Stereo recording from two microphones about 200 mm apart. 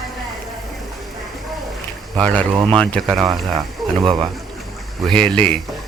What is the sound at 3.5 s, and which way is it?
Speech, 20° right (ahead or behind).